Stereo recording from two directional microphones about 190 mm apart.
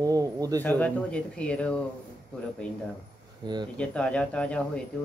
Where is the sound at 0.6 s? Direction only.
10° left (ahead or behind).